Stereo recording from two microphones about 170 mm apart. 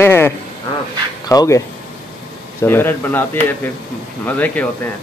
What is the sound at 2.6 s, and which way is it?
Speech, 15° left (ahead or behind).